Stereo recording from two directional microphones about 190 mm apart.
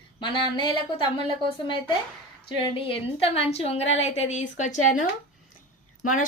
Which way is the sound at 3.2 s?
30° left (ahead or behind).